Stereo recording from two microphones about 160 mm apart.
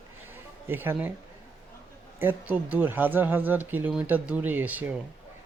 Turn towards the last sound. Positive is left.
turn(degrees=-10)  # may be behind; listen again after turning